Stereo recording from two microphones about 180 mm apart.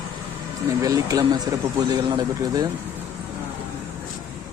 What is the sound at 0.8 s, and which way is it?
Speech, 20° right (ahead or behind).